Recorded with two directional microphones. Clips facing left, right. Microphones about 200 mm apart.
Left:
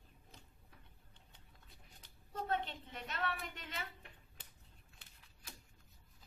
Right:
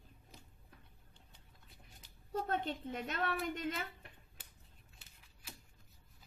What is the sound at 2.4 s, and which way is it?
A woman's voice, 50° right (ahead or behind).